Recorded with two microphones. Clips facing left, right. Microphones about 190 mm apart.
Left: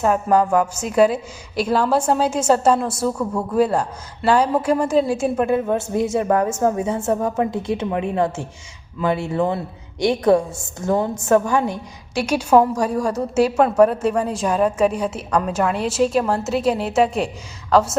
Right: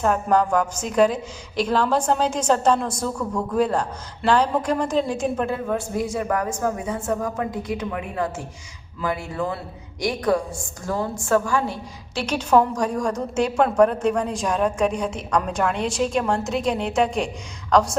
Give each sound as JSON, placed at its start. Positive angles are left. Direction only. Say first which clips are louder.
{"t": 0.0, "sound": "a woman's voice", "louder": "left 3 dB", "side_deg": 5}
{"t": 5.6, "sound": "a woman's voice", "louder": "left 4 dB", "side_deg": 25}